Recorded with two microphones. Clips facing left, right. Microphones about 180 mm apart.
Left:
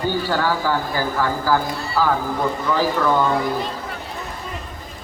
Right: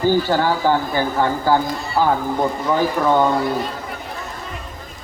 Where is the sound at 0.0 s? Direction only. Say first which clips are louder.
Right 4 dB; 25° right (ahead or behind).